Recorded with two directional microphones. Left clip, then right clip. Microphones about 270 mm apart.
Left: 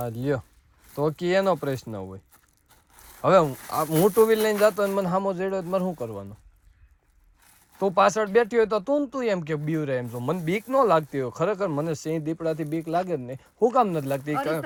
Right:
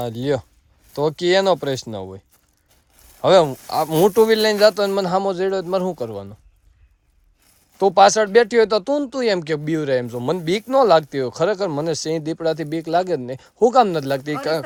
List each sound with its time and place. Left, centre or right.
0.0 s speech: centre
7.8 s speech: centre